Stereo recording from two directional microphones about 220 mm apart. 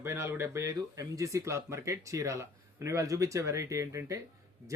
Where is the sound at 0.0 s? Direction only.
10° right (ahead or behind).